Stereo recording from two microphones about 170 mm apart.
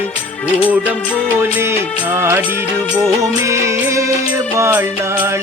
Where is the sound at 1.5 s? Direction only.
15° right (ahead or behind).